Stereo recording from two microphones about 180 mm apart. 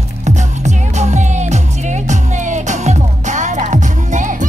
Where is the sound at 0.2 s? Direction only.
40° right (ahead or behind).